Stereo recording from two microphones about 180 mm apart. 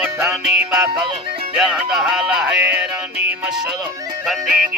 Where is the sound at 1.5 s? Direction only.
5° right (ahead or behind).